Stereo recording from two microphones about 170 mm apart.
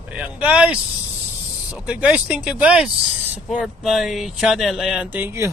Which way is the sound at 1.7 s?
5° right (ahead or behind).